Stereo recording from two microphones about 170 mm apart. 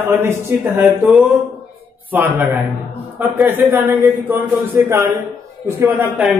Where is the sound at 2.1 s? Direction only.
10° right (ahead or behind).